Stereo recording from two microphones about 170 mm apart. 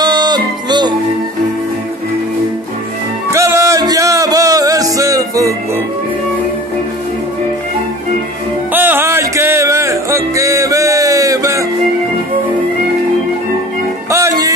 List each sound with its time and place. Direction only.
0.0 s music: 25° right (ahead or behind)
3.3 s music: 15° right (ahead or behind)
8.7 s music: 10° right (ahead or behind)
14.1 s music: 20° right (ahead or behind)